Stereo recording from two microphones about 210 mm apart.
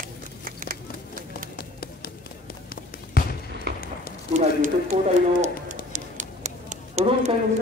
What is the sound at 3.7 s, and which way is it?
Run, 50° right (ahead or behind).